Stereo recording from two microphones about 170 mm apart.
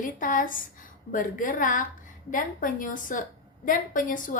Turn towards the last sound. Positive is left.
turn(degrees=50)  # may be behind; listen again after turning